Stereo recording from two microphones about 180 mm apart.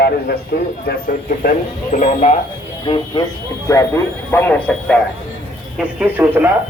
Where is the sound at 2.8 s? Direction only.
25° left (ahead or behind); by 5.0 s 5° left (ahead or behind).